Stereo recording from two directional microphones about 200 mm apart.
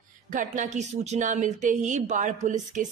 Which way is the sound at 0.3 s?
40° right (ahead or behind).